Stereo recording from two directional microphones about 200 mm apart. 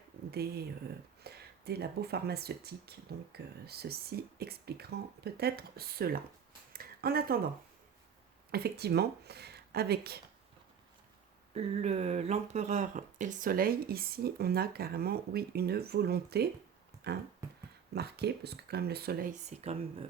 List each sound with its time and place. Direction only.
0.3 s speech: 50° right (ahead or behind)
6.7 s a sound: 50° right (ahead or behind)
8.5 s speech: 50° right (ahead or behind)
11.5 s speech: 30° right (ahead or behind)